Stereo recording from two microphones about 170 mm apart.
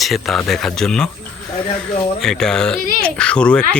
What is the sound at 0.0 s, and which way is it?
Speech, centre (ahead or behind).